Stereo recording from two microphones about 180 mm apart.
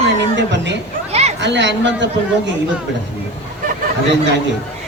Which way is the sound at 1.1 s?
35° right (ahead or behind).